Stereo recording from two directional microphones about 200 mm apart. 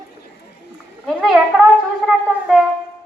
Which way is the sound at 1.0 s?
Centre (ahead or behind).